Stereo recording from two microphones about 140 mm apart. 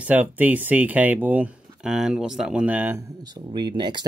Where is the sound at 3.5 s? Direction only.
30° right (ahead or behind).